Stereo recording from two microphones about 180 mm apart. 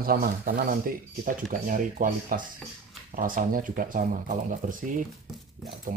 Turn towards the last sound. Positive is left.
turn(degrees=-45)  # may be behind; listen again after turning